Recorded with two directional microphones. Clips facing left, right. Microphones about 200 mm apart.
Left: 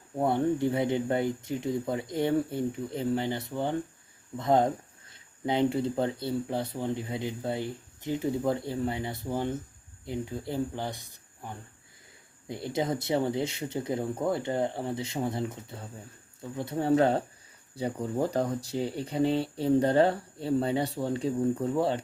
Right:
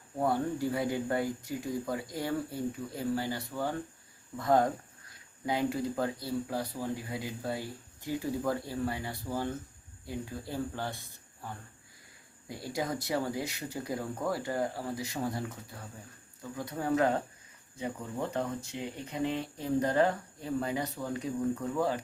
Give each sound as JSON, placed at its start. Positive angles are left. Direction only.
{"t": 0.2, "sound": "speech", "side_deg": 25}